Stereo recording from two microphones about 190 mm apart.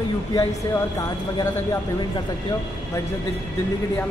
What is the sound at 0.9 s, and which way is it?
Speech, 15° left (ahead or behind).